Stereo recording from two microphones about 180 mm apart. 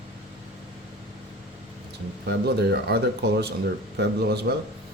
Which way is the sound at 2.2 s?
65° right (ahead or behind).